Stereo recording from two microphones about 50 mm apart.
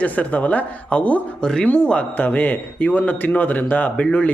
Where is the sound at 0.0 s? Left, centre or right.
Left.